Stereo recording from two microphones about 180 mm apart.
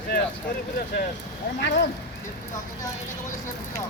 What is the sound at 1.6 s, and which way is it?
Speech, 70° left (ahead or behind).